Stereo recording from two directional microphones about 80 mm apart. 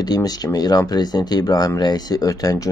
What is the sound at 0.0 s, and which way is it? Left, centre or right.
Speech, left.